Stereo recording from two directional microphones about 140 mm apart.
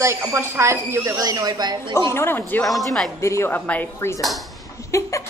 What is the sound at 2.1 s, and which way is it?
Speech, 15° left (ahead or behind).